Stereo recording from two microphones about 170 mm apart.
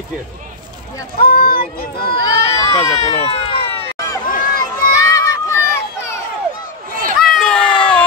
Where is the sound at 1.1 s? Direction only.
65° left (ahead or behind).